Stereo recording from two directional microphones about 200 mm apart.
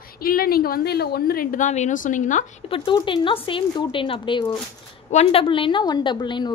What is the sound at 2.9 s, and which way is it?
A woman's voice, 25° left (ahead or behind).